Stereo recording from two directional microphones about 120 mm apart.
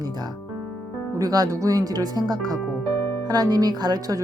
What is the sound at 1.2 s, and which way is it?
A woman's voice, 30° right (ahead or behind).